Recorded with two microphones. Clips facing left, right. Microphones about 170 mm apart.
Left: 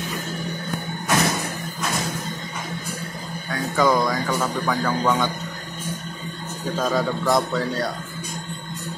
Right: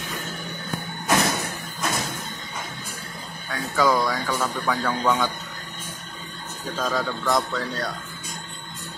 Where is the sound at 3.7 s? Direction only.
Centre (ahead or behind).